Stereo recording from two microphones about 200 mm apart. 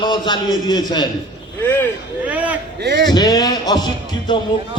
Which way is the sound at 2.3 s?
10° right (ahead or behind).